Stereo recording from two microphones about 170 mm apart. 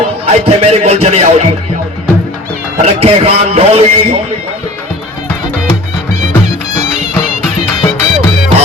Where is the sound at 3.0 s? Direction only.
35° right (ahead or behind).